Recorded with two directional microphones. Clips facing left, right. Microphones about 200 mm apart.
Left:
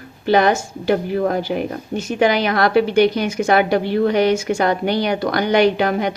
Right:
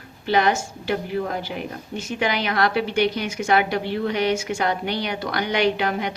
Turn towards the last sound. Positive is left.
turn(degrees=45)  # may be behind; listen again after turning